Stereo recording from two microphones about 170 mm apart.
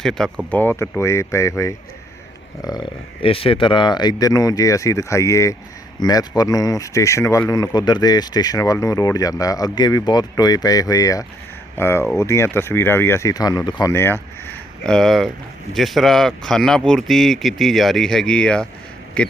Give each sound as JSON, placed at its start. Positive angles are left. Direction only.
{"t": 0.0, "sound": "speech", "side_deg": 5}
{"t": 13.9, "sound": "speech", "side_deg": 15}